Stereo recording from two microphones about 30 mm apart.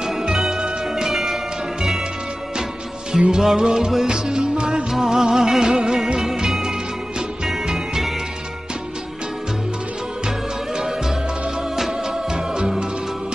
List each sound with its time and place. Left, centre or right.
1.0 s music: centre
3.1 s music: right
4.9 s music: centre